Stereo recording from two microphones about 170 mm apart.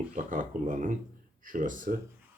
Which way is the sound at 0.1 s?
50° right (ahead or behind).